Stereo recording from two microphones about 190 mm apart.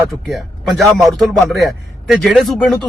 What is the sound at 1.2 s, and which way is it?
Speech, centre (ahead or behind).